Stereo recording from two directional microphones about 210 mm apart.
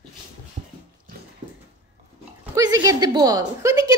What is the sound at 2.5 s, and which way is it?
A woman's voice, 15° right (ahead or behind).